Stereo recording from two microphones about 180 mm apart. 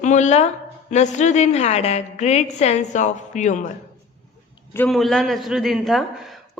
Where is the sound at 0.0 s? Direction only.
40° left (ahead or behind).